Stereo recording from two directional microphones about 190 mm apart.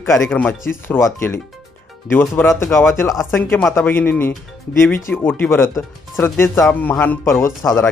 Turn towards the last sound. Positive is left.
turn(degrees=15)  # may be behind; listen again after turning